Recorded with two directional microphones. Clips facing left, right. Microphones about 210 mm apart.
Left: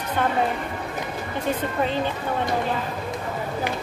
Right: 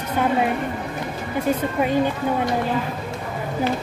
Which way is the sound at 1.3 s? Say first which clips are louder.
Right 4 dB; 10° right (ahead or behind).